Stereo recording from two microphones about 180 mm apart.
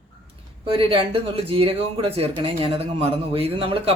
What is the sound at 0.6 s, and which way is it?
Speech, 30° right (ahead or behind).